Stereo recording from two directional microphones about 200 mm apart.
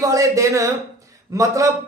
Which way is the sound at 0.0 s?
15° right (ahead or behind).